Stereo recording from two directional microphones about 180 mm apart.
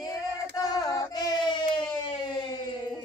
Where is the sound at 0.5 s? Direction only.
20° left (ahead or behind).